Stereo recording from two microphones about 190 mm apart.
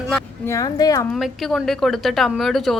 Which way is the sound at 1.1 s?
Centre (ahead or behind).